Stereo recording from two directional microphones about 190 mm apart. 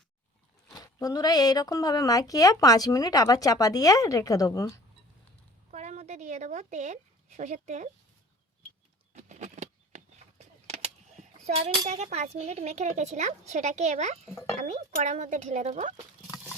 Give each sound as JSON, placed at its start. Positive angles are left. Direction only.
{"t": 0.7, "sound": "speech", "side_deg": 15}
{"t": 5.7, "sound": "speech", "side_deg": -35}
{"t": 9.1, "sound": "a sound", "side_deg": -40}
{"t": 11.9, "sound": "speech", "side_deg": -35}